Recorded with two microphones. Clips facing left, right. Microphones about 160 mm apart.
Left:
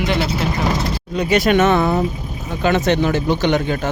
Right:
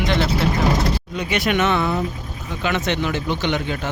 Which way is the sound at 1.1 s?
40° left (ahead or behind).